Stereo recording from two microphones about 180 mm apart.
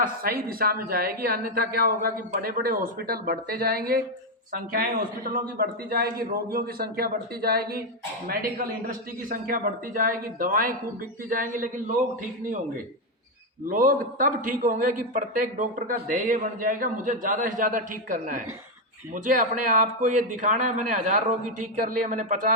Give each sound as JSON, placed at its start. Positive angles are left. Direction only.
{"t": 0.0, "sound": "a man's voice", "side_deg": -55}
{"t": 13.7, "sound": "a man's voice", "side_deg": -50}